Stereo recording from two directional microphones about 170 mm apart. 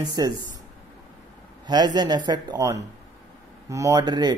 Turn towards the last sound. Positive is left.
turn(degrees=-25)  # may be behind; listen again after turning